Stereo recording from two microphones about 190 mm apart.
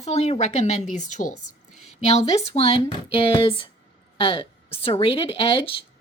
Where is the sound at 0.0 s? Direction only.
35° left (ahead or behind).